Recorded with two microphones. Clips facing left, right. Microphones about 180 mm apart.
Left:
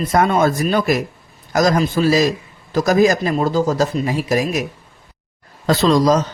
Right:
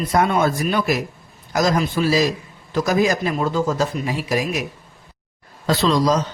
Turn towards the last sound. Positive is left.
turn(degrees=45)  # may be behind; listen again after turning